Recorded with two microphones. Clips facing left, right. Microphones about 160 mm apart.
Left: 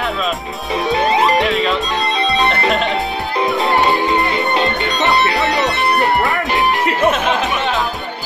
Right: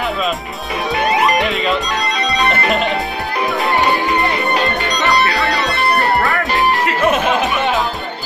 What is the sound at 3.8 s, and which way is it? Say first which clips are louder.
Music: left 1 dB; 20° left (ahead or behind).